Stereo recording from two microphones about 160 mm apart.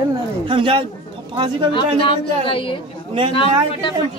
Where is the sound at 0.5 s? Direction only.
30° right (ahead or behind).